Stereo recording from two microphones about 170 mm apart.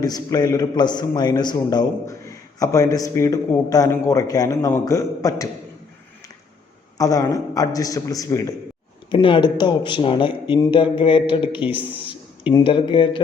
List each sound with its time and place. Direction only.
0.0 s a man's voice: 20° left (ahead or behind)
7.0 s a man's voice: 20° left (ahead or behind)